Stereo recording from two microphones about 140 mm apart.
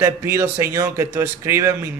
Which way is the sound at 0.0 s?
20° right (ahead or behind).